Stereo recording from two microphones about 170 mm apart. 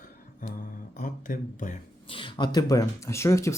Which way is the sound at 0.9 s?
50° left (ahead or behind).